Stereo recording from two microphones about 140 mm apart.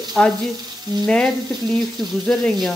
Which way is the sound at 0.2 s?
10° left (ahead or behind).